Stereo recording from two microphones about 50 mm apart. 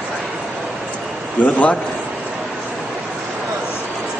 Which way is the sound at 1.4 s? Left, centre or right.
Left.